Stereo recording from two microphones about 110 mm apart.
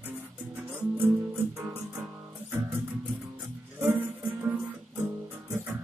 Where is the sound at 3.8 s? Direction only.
15° right (ahead or behind).